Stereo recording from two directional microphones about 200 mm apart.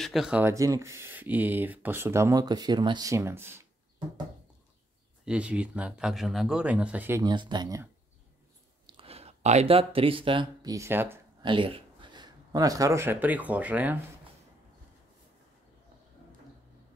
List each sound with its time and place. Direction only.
0.0 s speech: centre (ahead or behind)
5.2 s speech: 5° right (ahead or behind)
11.4 s speech: 25° right (ahead or behind); by 13.9 s 5° right (ahead or behind)